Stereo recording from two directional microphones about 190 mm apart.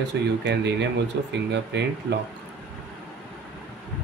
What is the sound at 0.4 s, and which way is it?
Speech, 65° right (ahead or behind).